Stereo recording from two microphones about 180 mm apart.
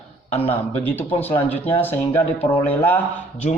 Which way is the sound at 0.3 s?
35° left (ahead or behind).